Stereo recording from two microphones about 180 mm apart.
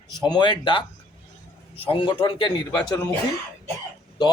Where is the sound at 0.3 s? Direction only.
25° left (ahead or behind).